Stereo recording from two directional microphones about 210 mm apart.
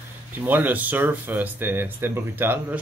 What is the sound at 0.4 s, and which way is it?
Speech, 10° right (ahead or behind).